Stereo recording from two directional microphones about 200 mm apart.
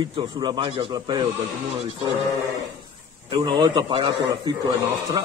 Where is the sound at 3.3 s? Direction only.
25° right (ahead or behind).